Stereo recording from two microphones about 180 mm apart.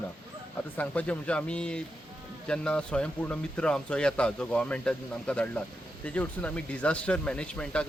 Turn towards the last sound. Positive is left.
turn(degrees=5)  # may be behind; listen again after turning